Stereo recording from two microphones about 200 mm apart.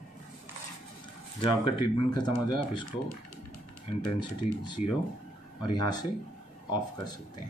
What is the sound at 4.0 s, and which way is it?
A man's voice, 25° left (ahead or behind).